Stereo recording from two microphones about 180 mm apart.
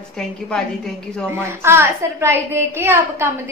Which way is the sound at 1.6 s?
15° right (ahead or behind).